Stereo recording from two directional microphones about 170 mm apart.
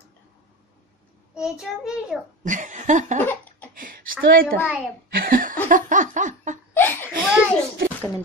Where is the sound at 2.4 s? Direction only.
50° right (ahead or behind).